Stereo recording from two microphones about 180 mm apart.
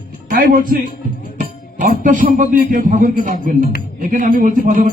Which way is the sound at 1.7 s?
45° right (ahead or behind).